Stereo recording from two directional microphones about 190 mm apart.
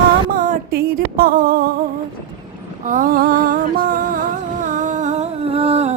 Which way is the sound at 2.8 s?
45° right (ahead or behind).